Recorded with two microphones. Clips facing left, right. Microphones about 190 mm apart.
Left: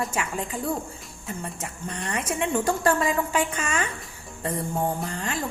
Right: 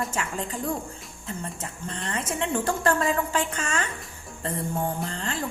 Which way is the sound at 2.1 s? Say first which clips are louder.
Left 2 dB; 15° left (ahead or behind).